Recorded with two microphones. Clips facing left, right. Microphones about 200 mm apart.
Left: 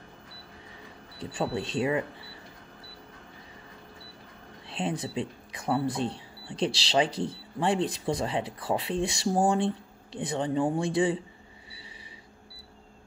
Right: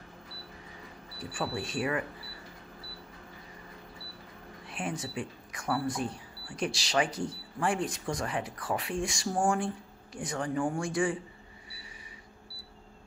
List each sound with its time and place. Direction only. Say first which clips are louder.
1.2 s speech: left 4 dB; 25° left (ahead or behind)
4.6 s a sound: left 5 dB; 25° left (ahead or behind)
5.1 s speech: left 4 dB; 25° left (ahead or behind)